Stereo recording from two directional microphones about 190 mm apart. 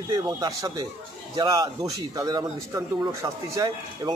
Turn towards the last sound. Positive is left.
turn(degrees=-20)  # may be behind; listen again after turning